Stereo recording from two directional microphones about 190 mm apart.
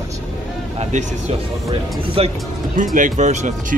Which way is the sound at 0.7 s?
35° right (ahead or behind).